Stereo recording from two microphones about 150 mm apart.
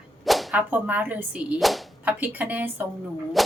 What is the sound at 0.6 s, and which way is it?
A woman's voice, 10° right (ahead or behind).